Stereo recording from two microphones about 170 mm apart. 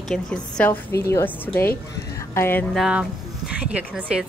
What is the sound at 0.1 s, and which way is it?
A woman's voice, 5° left (ahead or behind).